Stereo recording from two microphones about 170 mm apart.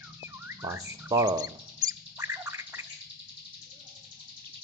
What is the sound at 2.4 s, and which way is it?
Gargling, 15° right (ahead or behind).